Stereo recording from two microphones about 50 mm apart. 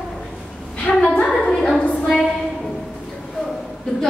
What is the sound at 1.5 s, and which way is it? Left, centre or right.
Speech, centre.